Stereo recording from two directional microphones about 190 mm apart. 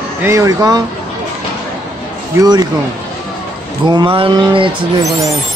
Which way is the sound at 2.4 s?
20° right (ahead or behind).